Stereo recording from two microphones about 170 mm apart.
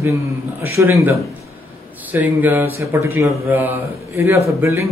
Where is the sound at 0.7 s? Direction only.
15° right (ahead or behind).